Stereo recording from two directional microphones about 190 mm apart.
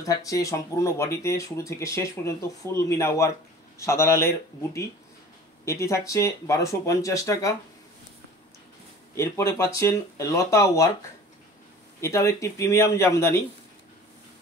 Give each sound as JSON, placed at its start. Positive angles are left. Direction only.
{"t": 0.0, "sound": "speech", "side_deg": 15}
{"t": 9.1, "sound": "speech", "side_deg": 15}
{"t": 12.0, "sound": "speech", "side_deg": 15}